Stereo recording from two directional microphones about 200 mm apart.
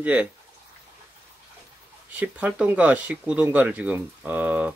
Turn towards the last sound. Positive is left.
turn(degrees=-10)  # may be behind; listen again after turning